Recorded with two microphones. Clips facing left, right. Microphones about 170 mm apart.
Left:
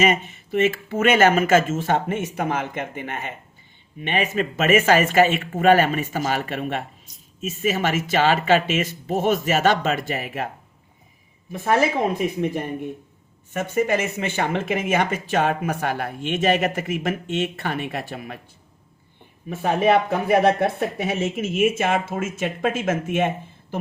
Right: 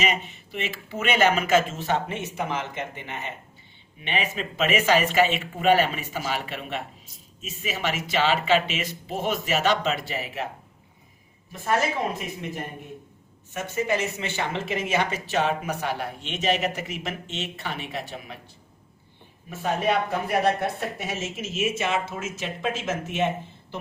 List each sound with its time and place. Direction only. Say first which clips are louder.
0.0 s speech: left 7 dB; 45° left (ahead or behind)
11.5 s speech: left 5 dB; 60° left (ahead or behind)
13.5 s speech: left 5 dB; 55° left (ahead or behind)
19.6 s speech: left 6 dB; 60° left (ahead or behind)